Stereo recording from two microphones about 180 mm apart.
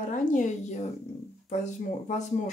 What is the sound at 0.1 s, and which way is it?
Speech, 45° left (ahead or behind).